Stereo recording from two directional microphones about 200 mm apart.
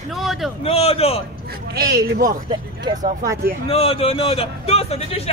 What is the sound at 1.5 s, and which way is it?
Speech, 50° right (ahead or behind).